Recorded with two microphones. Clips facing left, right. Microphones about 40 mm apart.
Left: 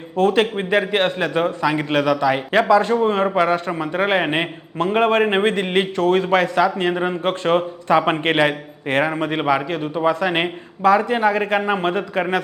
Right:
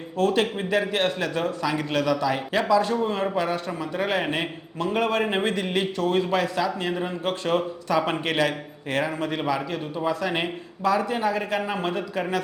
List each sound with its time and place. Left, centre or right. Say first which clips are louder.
0.2 s a man's voice: left 5 dB; left